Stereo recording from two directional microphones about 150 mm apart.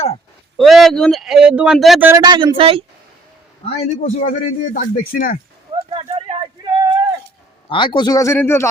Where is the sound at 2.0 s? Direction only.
15° right (ahead or behind).